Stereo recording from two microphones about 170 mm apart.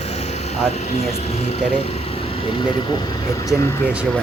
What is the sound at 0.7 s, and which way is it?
Speech, 40° left (ahead or behind).